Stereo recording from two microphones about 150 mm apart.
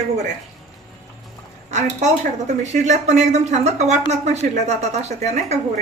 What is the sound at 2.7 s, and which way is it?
Speech, 50° right (ahead or behind).